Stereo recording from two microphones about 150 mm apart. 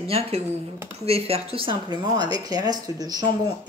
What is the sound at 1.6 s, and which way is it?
Speech, 30° right (ahead or behind).